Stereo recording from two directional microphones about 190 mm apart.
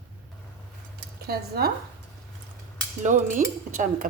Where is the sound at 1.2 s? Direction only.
55° right (ahead or behind).